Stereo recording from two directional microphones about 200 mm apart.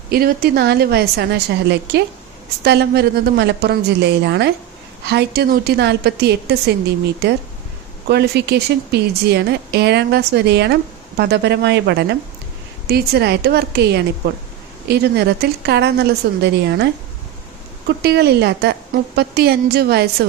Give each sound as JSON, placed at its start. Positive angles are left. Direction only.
{"t": 0.1, "sound": "a woman's voice", "side_deg": -50}